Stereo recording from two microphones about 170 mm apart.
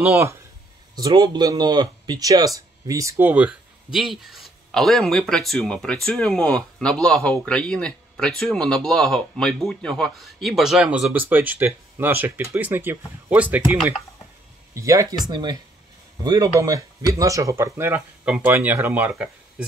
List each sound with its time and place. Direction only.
0.0 s speech: 15° right (ahead or behind)